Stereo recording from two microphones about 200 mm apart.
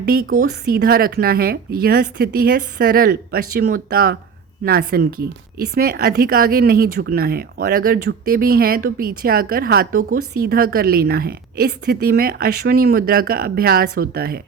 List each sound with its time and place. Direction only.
0.0 s speech: 45° right (ahead or behind)